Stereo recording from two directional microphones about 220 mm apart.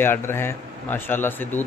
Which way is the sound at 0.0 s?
10° left (ahead or behind).